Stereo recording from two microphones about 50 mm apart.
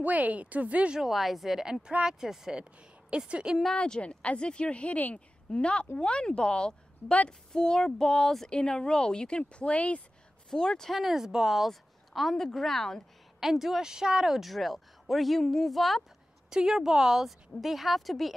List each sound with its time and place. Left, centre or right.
0.0 s speech: right
0.9 s speech: centre
2.0 s speech: centre
3.1 s speech: right
3.7 s a woman's voice: left
10.5 s speech: centre
11.0 s speech: centre
13.4 s speech: centre
16.4 s speech: centre